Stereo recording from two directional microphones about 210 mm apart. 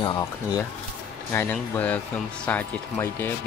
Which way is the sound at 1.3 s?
10° left (ahead or behind).